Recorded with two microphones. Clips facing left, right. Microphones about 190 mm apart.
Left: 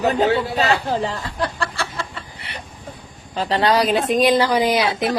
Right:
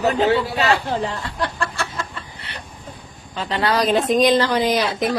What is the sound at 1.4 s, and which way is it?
Chicken, 35° left (ahead or behind).